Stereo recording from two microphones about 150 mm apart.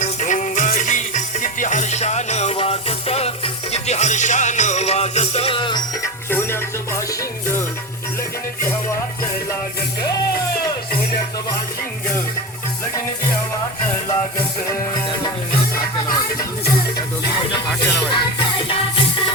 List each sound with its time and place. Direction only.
0.0 s music: 55° left (ahead or behind); by 5.8 s 35° left (ahead or behind)
6.0 s music: 15° left (ahead or behind)
14.7 s music: 25° left (ahead or behind)